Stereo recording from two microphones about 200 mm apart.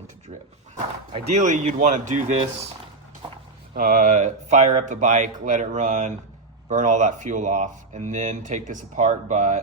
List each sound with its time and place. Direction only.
1.1 s speech: 35° right (ahead or behind)
3.2 s a sound: 25° right (ahead or behind)
3.8 s speech: 40° right (ahead or behind)